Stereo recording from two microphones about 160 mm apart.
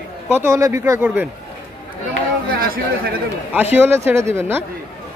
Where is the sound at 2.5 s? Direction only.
65° right (ahead or behind).